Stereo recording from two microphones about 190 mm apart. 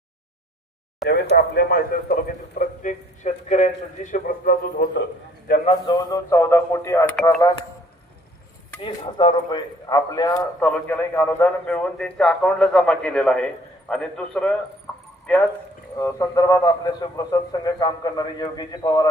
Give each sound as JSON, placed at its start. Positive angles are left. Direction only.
{"t": 1.0, "sound": "speech", "side_deg": 55}
{"t": 5.6, "sound": "speech", "side_deg": 20}
{"t": 8.8, "sound": "a man's voice", "side_deg": 25}
{"t": 10.7, "sound": "a man's voice", "side_deg": 10}
{"t": 16.0, "sound": "a man's voice", "side_deg": 15}